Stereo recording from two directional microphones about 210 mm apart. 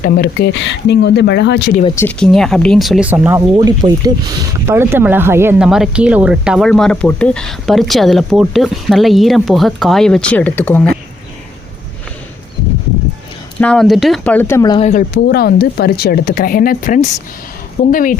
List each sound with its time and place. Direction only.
0.0 s speech: 45° left (ahead or behind)
2.0 s speech: 5° left (ahead or behind)
3.4 s speech: 20° right (ahead or behind); by 10.8 s 10° left (ahead or behind)
13.6 s speech: 5° left (ahead or behind)
14.8 s a woman's voice: 40° left (ahead or behind)